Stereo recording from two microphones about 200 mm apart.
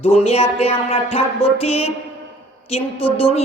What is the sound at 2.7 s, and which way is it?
Speech, 30° left (ahead or behind).